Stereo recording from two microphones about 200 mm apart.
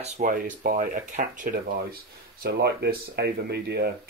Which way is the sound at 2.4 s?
55° right (ahead or behind).